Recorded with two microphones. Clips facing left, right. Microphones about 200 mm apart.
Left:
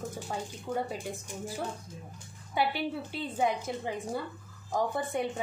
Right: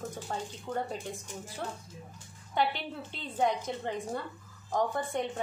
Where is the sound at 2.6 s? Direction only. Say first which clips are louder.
Left 1 dB; 5° left (ahead or behind).